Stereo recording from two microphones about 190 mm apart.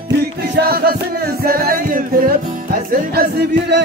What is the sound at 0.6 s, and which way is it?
Music, 55° right (ahead or behind).